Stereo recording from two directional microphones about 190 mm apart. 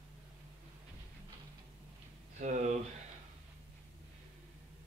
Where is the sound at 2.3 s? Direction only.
40° right (ahead or behind).